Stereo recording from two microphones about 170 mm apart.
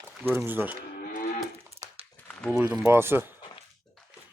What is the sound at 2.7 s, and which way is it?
Speech, 15° right (ahead or behind).